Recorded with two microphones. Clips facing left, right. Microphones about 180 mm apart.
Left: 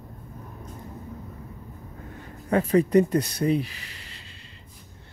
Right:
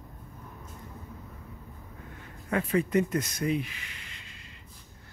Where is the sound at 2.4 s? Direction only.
40° left (ahead or behind).